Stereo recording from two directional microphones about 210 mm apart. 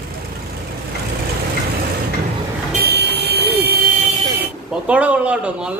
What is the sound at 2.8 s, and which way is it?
Vehicle, 50° right (ahead or behind).